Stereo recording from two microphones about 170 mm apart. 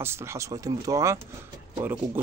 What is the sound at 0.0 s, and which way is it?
Speech, 15° right (ahead or behind).